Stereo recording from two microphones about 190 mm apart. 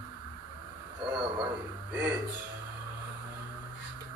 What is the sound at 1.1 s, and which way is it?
Speech, 25° right (ahead or behind).